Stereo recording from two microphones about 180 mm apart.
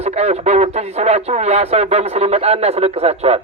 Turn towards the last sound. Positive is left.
turn(degrees=-35)  # may be behind; listen again after turning